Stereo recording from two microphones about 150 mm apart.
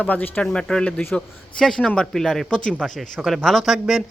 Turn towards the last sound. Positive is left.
turn(degrees=0)  # may be behind; listen again after turning